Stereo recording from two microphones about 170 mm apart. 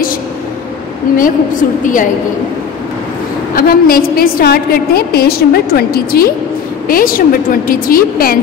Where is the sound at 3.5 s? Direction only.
60° left (ahead or behind).